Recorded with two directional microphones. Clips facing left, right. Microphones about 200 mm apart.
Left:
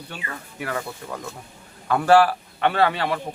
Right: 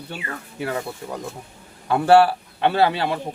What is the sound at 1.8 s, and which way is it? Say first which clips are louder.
Speech: right 2 dB; 25° right (ahead or behind).